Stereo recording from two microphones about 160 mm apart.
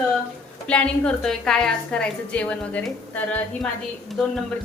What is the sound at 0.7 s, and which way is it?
A woman's voice, 5° left (ahead or behind).